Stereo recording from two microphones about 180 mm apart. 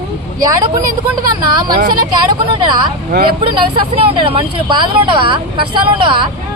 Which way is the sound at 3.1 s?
55° right (ahead or behind).